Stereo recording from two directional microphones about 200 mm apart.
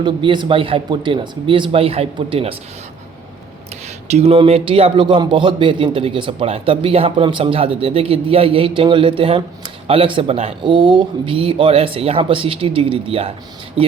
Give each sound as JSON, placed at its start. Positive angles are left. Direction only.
{"t": 0.0, "sound": "a man's voice", "side_deg": -25}
{"t": 4.1, "sound": "a man's voice", "side_deg": -30}